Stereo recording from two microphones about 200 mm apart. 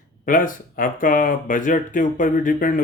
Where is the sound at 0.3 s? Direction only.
45° left (ahead or behind).